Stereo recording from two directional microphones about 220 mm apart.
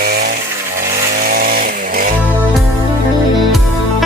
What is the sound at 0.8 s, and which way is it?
Vehicle, 45° right (ahead or behind).